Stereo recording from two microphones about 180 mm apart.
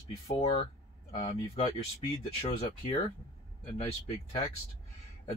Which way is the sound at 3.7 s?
35° left (ahead or behind).